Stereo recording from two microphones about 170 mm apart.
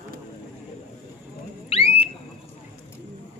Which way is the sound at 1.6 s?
35° left (ahead or behind).